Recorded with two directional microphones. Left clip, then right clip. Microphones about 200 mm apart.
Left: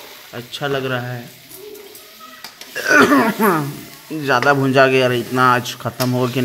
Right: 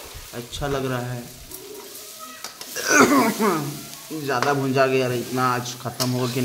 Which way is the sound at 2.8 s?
20° left (ahead or behind).